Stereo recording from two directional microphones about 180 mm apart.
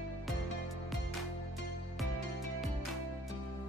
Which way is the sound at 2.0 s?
Centre (ahead or behind).